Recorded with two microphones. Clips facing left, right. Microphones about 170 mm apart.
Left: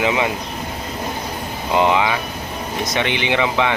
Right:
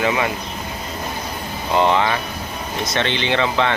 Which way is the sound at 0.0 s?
15° left (ahead or behind).